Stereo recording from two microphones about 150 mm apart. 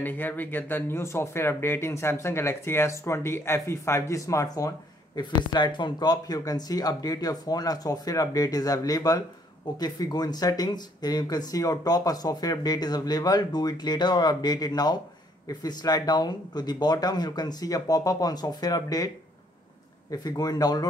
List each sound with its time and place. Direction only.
0.0 s speech: 10° left (ahead or behind)
20.1 s speech: 25° left (ahead or behind)